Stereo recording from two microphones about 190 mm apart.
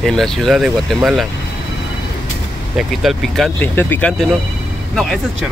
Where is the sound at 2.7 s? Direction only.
Centre (ahead or behind).